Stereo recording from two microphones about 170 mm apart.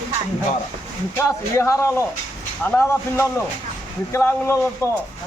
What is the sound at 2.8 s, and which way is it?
A man's voice, 15° left (ahead or behind).